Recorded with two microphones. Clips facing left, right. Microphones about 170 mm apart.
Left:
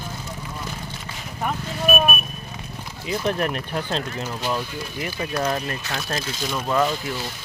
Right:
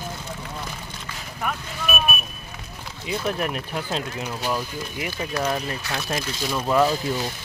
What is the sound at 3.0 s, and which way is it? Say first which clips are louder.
Speech: left 2 dB; 5° right (ahead or behind).